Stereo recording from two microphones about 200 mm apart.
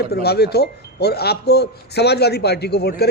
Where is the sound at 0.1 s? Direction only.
55° left (ahead or behind).